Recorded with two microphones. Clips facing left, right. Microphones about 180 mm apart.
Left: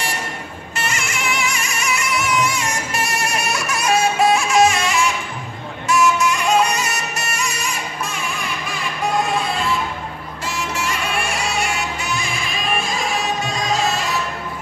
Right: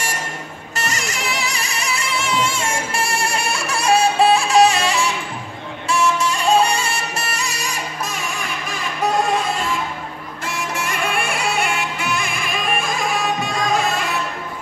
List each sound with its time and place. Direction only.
0.7 s music: 40° right (ahead or behind)
10.4 s music: 55° right (ahead or behind)